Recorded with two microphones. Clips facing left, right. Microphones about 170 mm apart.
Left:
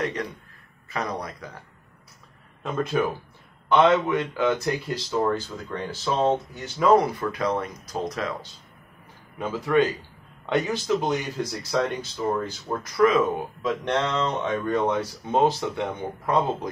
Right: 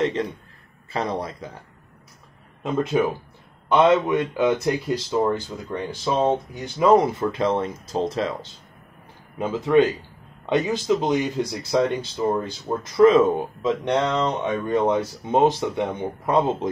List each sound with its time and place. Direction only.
0.0 s a man's voice: 25° right (ahead or behind)
2.6 s speech: 15° right (ahead or behind)